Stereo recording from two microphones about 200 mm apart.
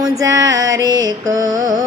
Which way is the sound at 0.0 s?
15° right (ahead or behind).